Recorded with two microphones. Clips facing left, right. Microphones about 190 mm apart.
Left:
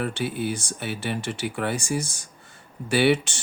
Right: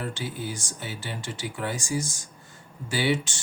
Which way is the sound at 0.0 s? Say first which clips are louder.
Left 6 dB; 65° left (ahead or behind).